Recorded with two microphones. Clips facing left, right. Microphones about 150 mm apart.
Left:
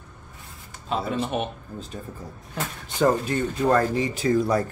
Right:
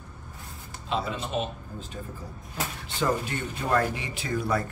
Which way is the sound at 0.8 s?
60° left (ahead or behind).